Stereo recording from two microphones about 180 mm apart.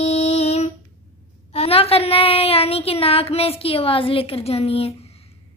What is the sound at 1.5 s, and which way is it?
Speech, 35° left (ahead or behind).